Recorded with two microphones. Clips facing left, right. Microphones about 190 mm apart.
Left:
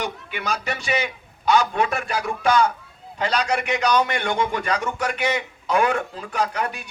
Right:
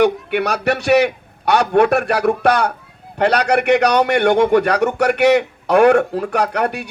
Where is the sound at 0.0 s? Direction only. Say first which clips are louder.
Right 13 dB; 65° right (ahead or behind).